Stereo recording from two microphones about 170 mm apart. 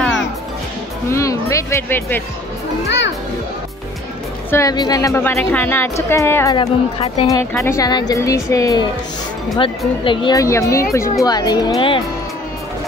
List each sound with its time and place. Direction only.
1.1 s a woman's voice: 20° left (ahead or behind)
4.5 s a woman's voice: 20° left (ahead or behind)
6.5 s speech: 35° left (ahead or behind)
7.6 s speech: 20° left (ahead or behind)